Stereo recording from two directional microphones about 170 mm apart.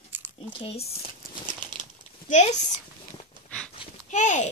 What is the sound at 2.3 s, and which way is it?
Speech, 45° left (ahead or behind).